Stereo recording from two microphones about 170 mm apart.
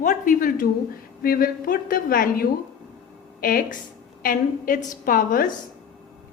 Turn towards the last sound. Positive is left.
turn(degrees=50)  # may be behind; listen again after turning